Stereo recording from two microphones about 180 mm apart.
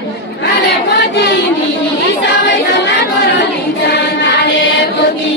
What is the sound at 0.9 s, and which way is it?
Choir, 85° left.